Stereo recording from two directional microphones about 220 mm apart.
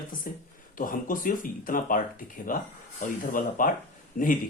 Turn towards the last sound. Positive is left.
turn(degrees=35)  # may be behind; listen again after turning